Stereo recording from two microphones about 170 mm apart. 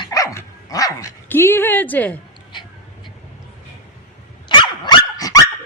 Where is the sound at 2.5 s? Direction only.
25° left (ahead or behind).